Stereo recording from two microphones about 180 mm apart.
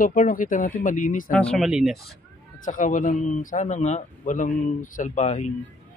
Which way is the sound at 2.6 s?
45° left (ahead or behind).